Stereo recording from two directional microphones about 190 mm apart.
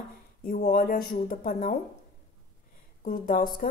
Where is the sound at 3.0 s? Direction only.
50° left (ahead or behind).